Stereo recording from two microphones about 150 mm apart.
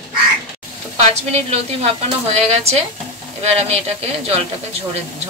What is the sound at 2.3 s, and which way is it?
Speech, 45° right (ahead or behind).